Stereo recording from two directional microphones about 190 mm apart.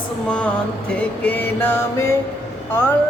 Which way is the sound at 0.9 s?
5° left (ahead or behind).